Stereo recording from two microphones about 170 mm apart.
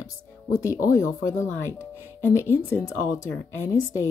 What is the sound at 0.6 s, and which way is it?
Speech, 20° left (ahead or behind).